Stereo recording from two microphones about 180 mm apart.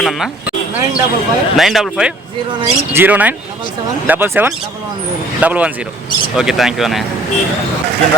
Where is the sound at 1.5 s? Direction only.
Centre (ahead or behind).